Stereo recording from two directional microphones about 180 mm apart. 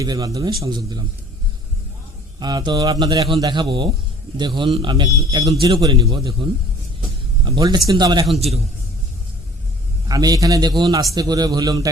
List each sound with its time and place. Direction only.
0.0 s a man's voice: 20° right (ahead or behind)
2.4 s a man's voice: 25° right (ahead or behind)
8.4 s a man's voice: 35° right (ahead or behind)
10.1 s a man's voice: 20° right (ahead or behind)